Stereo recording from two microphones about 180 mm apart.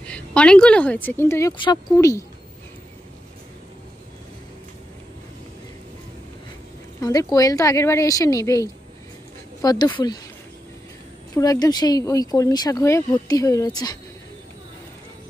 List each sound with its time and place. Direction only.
0.0 s speech: 5° left (ahead or behind)
7.0 s speech: 20° left (ahead or behind)
11.3 s speech: 20° left (ahead or behind)